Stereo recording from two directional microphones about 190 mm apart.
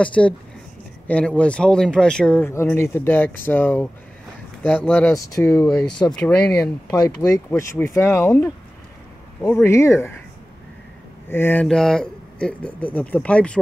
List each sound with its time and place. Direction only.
0.0 s speech: 5° left (ahead or behind)
6.9 s speech: 20° left (ahead or behind)
11.2 s speech: 10° left (ahead or behind)